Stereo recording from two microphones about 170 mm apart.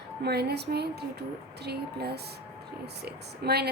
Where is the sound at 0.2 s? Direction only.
75° right (ahead or behind).